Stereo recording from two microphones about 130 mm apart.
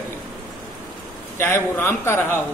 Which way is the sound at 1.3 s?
20° left (ahead or behind).